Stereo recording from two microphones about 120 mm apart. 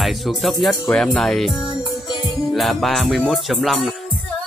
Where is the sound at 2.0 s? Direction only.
35° left (ahead or behind).